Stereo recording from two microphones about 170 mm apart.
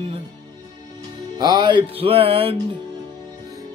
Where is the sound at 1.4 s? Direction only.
25° right (ahead or behind).